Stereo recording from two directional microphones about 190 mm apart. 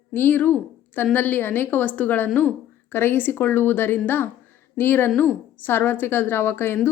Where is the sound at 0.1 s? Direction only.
10° left (ahead or behind).